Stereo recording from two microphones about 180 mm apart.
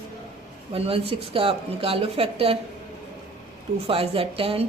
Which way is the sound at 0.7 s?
30° right (ahead or behind).